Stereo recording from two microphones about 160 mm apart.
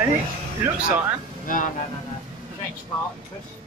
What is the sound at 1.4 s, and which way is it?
Speech, 55° left (ahead or behind).